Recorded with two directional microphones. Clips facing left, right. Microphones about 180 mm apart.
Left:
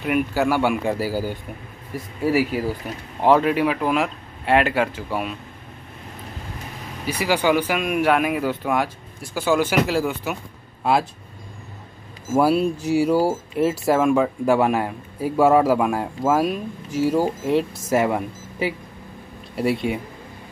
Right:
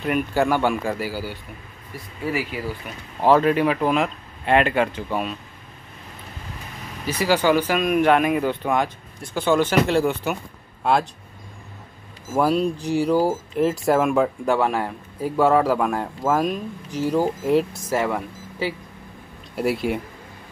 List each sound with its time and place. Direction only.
0.0 s speech: 5° left (ahead or behind)
0.9 s speech: 40° left (ahead or behind)
3.2 s speech: 15° left (ahead or behind)
7.1 s speech: 15° left (ahead or behind)
12.4 s speech: 5° left (ahead or behind)
17.9 s speech: 15° left (ahead or behind)
19.5 s speech: centre (ahead or behind)